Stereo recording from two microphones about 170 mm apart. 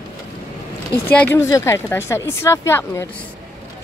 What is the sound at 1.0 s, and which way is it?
Speech, 10° left (ahead or behind).